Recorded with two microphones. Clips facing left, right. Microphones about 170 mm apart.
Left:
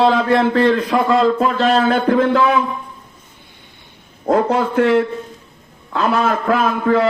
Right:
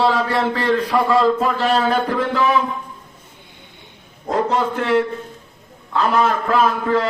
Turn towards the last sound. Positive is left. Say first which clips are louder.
# left 2 dB
turn(degrees=50)  # may be behind; listen again after turning